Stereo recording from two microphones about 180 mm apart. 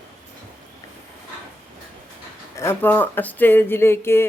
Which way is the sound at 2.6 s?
10° left (ahead or behind).